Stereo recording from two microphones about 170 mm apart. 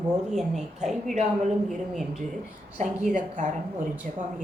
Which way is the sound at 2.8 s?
45° right (ahead or behind).